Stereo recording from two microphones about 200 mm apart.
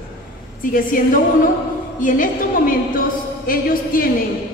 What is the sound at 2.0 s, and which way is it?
A woman's voice, 40° left (ahead or behind).